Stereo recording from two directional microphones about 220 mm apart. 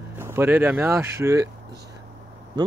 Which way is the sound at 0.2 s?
10° right (ahead or behind).